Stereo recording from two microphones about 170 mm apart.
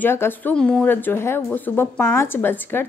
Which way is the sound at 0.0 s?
10° left (ahead or behind).